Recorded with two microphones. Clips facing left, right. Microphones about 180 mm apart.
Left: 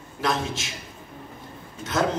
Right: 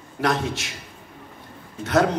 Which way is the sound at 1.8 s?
65° right (ahead or behind).